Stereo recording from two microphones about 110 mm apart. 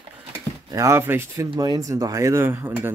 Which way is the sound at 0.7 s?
25° right (ahead or behind).